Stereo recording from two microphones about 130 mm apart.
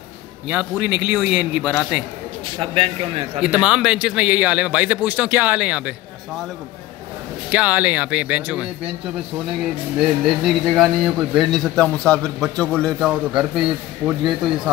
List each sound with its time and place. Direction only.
0.5 s speech: 10° right (ahead or behind)
2.6 s a man's voice: 45° right (ahead or behind)
3.3 s speech: 5° right (ahead or behind)
7.5 s speech: 10° right (ahead or behind)
10.4 s a man's voice: centre (ahead or behind)
13.1 s a man's voice: 5° right (ahead or behind)